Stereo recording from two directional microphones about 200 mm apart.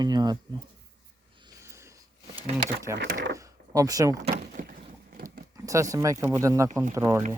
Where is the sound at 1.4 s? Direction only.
15° right (ahead or behind).